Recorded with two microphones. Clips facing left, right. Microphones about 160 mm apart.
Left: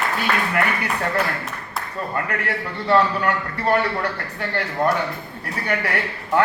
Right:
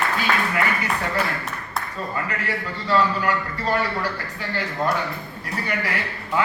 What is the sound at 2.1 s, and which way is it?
A man's voice, 60° left (ahead or behind).